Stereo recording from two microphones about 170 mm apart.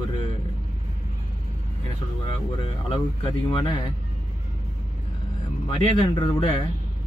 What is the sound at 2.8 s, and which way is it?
Speech, 25° left (ahead or behind).